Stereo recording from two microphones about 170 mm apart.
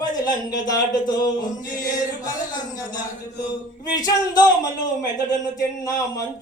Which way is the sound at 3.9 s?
20° left (ahead or behind).